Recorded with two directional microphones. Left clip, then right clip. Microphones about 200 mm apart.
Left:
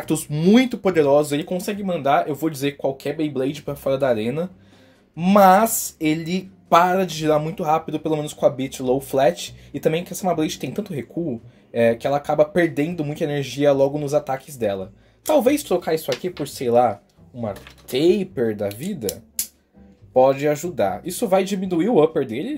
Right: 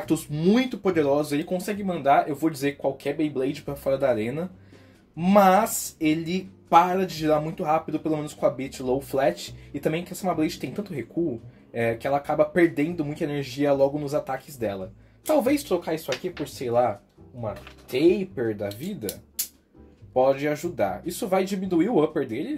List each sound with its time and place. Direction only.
0.0 s speech: 40° left (ahead or behind)
17.9 s speech: 50° left (ahead or behind)
20.2 s speech: 35° left (ahead or behind)